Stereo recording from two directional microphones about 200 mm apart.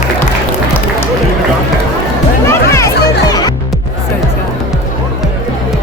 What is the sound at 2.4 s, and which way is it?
Music, 15° left (ahead or behind).